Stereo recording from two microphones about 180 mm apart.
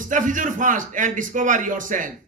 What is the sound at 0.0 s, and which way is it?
A man's voice, 45° right (ahead or behind).